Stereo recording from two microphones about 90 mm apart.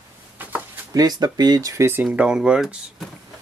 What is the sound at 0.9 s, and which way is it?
Speech, 50° right (ahead or behind).